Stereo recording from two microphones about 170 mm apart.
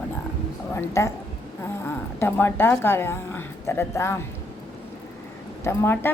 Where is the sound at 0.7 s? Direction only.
15° left (ahead or behind).